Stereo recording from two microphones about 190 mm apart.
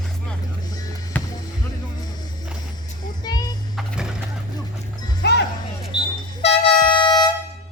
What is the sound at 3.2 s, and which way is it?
Vehicle, 20° left (ahead or behind).